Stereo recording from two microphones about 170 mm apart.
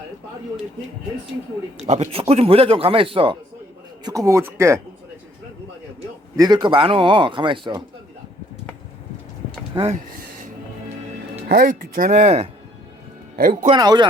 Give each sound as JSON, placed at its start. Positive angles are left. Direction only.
{"t": 1.8, "sound": "speech", "side_deg": -40}
{"t": 4.0, "sound": "speech", "side_deg": -20}
{"t": 6.3, "sound": "a man's voice", "side_deg": -25}
{"t": 9.7, "sound": "speech", "side_deg": -40}
{"t": 11.4, "sound": "speech", "side_deg": -60}
{"t": 13.3, "sound": "speech", "side_deg": -55}
{"t": 13.7, "sound": "a man's voice", "side_deg": -25}